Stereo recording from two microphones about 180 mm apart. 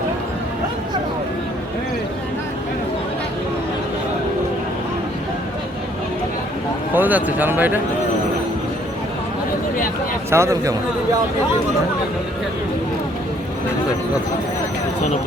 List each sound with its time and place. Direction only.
6.9 s a man's voice: 10° right (ahead or behind)
10.2 s a man's voice: 15° right (ahead or behind)